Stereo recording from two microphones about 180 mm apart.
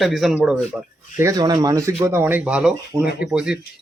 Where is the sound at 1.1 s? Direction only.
20° right (ahead or behind).